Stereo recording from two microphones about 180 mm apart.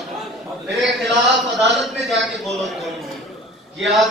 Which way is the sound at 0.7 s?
Centre (ahead or behind).